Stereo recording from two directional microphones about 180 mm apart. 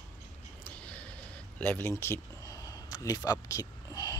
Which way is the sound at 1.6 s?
10° left (ahead or behind).